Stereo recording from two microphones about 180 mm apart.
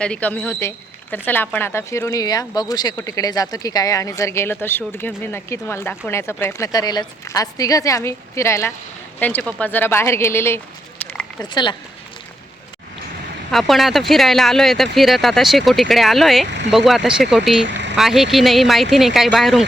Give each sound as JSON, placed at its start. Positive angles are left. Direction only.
{"t": 0.0, "sound": "speech", "side_deg": 5}
{"t": 11.0, "sound": "a sound", "side_deg": 5}
{"t": 11.5, "sound": "speech", "side_deg": 25}
{"t": 13.5, "sound": "speech", "side_deg": 0}